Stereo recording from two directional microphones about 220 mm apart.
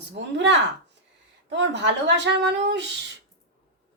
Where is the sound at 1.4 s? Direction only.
55° right (ahead or behind).